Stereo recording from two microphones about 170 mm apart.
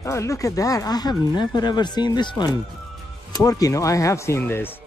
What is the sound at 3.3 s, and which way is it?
Speech, 20° left (ahead or behind).